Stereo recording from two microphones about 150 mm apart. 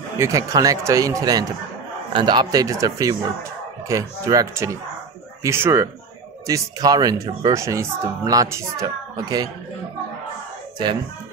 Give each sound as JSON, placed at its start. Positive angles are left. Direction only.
{"t": 0.2, "sound": "a child's voice", "side_deg": -20}